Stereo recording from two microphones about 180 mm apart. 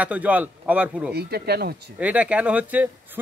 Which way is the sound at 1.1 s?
60° right (ahead or behind).